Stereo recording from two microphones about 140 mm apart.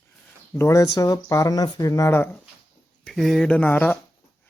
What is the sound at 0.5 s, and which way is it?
Speech, 20° left (ahead or behind).